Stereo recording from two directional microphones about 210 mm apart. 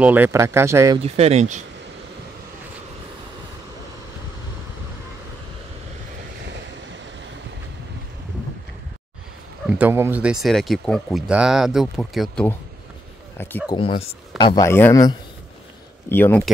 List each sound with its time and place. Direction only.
0.0 s speech: 10° right (ahead or behind)
1.0 s speech: 30° right (ahead or behind)
9.7 s speech: 10° right (ahead or behind); by 13.7 s 10° left (ahead or behind)
13.7 s speech: 25° left (ahead or behind); by 16.4 s 10° left (ahead or behind)